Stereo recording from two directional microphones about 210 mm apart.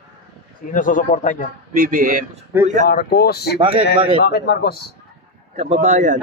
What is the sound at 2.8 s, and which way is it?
A man's voice, 45° left (ahead or behind).